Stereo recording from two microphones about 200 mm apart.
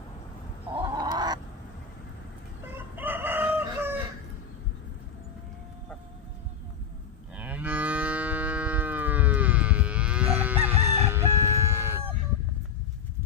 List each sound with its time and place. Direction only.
0.8 s a sound: 20° right (ahead or behind)
2.7 s chicken: 10° right (ahead or behind)
7.3 s livestock: 10° right (ahead or behind)
11.0 s crowing: 15° right (ahead or behind)